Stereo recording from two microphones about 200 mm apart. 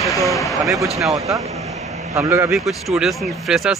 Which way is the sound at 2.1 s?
15° right (ahead or behind).